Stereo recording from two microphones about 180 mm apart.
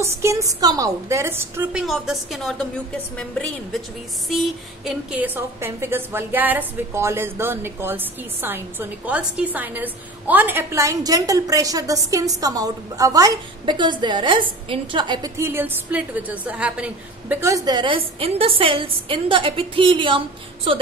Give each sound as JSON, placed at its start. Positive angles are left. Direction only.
{"t": 0.0, "sound": "a woman's voice", "side_deg": -15}